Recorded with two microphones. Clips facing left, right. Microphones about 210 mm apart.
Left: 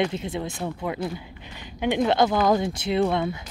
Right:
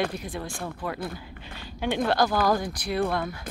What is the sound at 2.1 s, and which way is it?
Speech, 20° left (ahead or behind).